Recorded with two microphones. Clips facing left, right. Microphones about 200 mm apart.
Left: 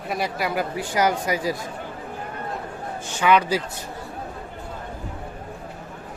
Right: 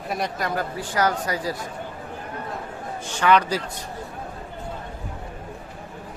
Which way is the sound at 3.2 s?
10° left (ahead or behind).